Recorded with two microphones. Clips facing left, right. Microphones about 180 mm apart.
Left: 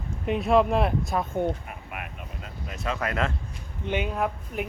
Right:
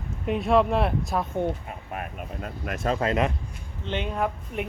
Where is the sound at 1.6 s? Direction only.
35° right (ahead or behind).